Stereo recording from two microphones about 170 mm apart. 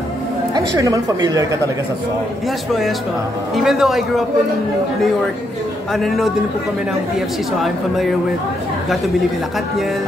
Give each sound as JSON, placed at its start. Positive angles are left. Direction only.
{"t": 0.6, "sound": "a woman's voice", "side_deg": -20}
{"t": 3.5, "sound": "speech", "side_deg": 0}
{"t": 5.9, "sound": "speech", "side_deg": 0}